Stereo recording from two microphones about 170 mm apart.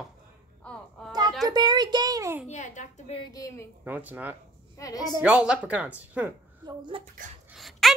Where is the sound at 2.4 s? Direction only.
45° left (ahead or behind).